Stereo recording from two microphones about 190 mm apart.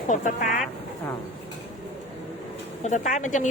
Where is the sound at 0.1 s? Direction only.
40° left (ahead or behind).